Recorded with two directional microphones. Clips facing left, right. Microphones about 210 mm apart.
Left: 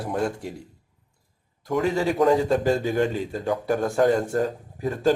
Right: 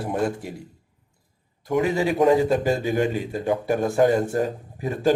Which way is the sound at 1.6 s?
20° right (ahead or behind).